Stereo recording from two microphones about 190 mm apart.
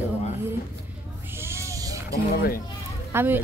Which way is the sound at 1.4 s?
15° right (ahead or behind).